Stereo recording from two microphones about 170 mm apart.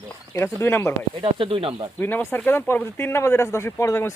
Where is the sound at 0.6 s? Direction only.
15° left (ahead or behind).